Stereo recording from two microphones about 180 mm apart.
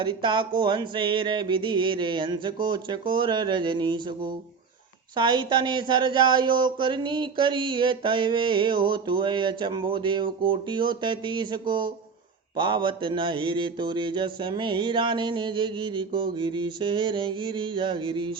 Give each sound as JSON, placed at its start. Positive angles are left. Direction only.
{"t": 0.0, "sound": "speech", "side_deg": -25}